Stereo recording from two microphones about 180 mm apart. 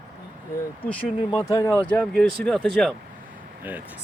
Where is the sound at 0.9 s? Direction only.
30° left (ahead or behind).